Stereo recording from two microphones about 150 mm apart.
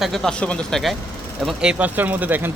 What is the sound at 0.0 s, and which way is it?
A man's voice, centre (ahead or behind).